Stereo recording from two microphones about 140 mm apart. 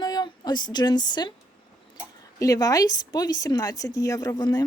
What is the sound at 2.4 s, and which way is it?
Speech, 25° left (ahead or behind).